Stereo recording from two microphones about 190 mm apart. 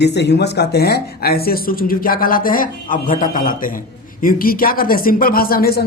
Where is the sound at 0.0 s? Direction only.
65° left (ahead or behind).